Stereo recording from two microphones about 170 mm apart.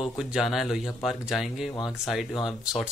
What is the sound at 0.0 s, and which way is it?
A man's voice, centre (ahead or behind).